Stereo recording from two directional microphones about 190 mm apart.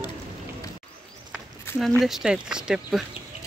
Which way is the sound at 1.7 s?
Centre (ahead or behind).